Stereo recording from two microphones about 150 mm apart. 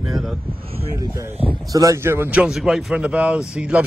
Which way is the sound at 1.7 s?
20° right (ahead or behind).